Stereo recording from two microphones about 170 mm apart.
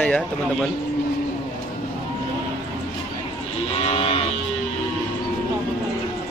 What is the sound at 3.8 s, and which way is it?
Music, 35° left (ahead or behind).